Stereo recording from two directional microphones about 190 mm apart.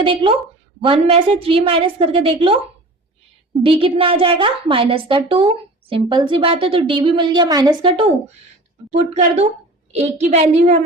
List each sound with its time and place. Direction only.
0.0 s a woman's voice: 25° right (ahead or behind)
3.6 s a woman's voice: 30° right (ahead or behind)